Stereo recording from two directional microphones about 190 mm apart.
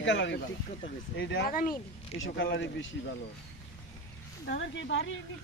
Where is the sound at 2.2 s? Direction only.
75° left (ahead or behind).